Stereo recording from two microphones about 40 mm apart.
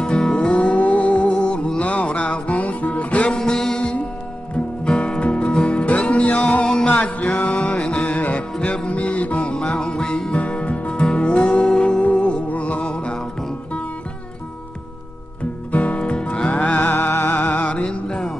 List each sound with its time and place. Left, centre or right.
0.0 s music: left
0.5 s music: left
3.3 s mantra: centre
4.8 s music: left
6.9 s music: left
10.3 s music: left
15.7 s music: left
17.1 s music: left
17.4 s music: left
17.6 s music: left